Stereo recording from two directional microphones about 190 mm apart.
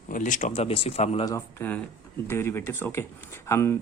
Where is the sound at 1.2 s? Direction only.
15° left (ahead or behind).